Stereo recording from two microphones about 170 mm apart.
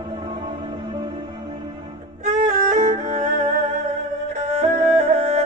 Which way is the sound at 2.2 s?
45° right (ahead or behind).